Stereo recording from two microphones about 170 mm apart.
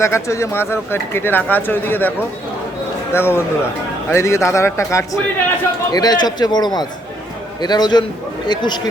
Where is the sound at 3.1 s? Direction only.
15° left (ahead or behind).